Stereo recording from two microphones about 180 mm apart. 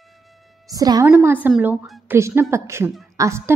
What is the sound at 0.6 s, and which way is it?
A woman's voice, 20° right (ahead or behind).